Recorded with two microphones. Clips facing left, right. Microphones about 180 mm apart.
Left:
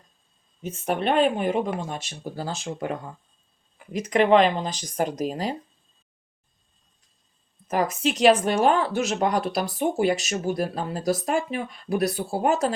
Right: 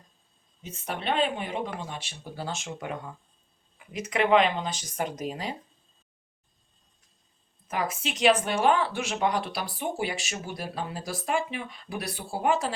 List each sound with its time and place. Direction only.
0.6 s speech: 50° left (ahead or behind)
7.7 s speech: 40° left (ahead or behind)